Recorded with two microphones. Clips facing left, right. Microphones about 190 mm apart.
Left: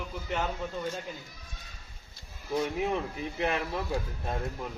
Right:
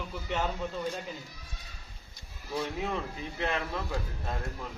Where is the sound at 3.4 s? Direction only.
15° left (ahead or behind).